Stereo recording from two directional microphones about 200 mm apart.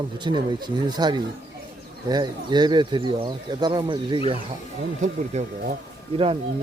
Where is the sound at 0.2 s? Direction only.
20° right (ahead or behind).